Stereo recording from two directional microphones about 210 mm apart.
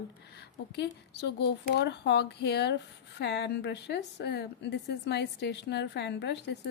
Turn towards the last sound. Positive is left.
turn(degrees=55)  # may be behind; listen again after turning